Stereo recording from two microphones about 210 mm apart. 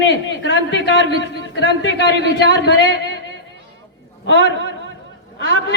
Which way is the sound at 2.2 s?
55° right (ahead or behind).